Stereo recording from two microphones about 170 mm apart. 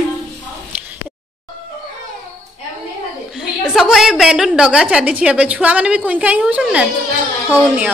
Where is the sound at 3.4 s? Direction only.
5° right (ahead or behind).